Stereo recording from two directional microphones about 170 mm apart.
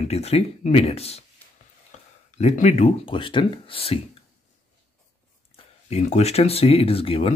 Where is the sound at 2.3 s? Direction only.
45° left (ahead or behind).